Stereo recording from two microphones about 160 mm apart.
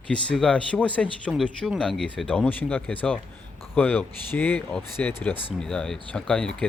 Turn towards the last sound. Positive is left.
turn(degrees=5)  # may be behind; listen again after turning